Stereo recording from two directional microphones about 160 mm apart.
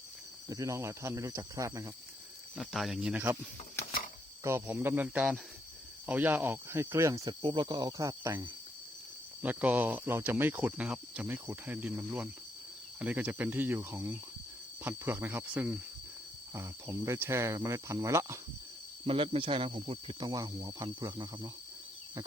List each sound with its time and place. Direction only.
0.5 s speech: 20° right (ahead or behind)
2.6 s speech: centre (ahead or behind)
4.4 s speech: 15° right (ahead or behind)
7.4 s speech: 30° right (ahead or behind)
19.0 s speech: 35° right (ahead or behind)